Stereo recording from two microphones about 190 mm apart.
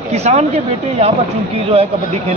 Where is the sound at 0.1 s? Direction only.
35° right (ahead or behind).